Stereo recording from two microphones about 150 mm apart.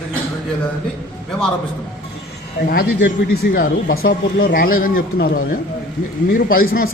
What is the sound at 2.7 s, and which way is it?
A man's voice, 85° left.